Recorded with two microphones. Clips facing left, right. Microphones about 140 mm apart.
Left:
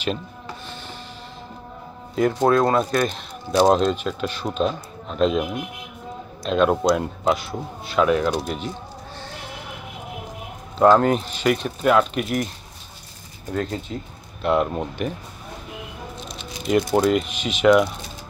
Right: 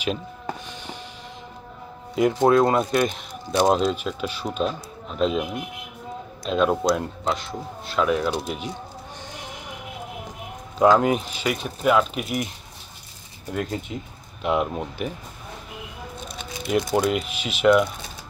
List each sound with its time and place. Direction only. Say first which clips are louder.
2.1 s speech: right 1 dB; 15° right (ahead or behind)
3.7 s speech: left 2 dB; 5° right (ahead or behind)
6.4 s speech: left 2 dB; 5° right (ahead or behind)
9.2 s a sound: left 2 dB; 15° right (ahead or behind)
10.8 s speech: left 2 dB; 10° right (ahead or behind)
13.5 s speech: left 2 dB; 15° right (ahead or behind)
16.6 s speech: left 3 dB; 5° right (ahead or behind)